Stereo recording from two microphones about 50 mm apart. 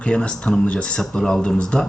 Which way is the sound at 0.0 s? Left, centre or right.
Centre.